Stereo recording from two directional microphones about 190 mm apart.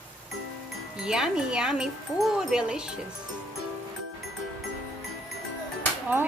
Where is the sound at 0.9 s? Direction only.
5° right (ahead or behind).